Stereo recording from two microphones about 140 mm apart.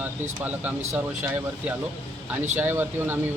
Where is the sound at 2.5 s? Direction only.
15° right (ahead or behind).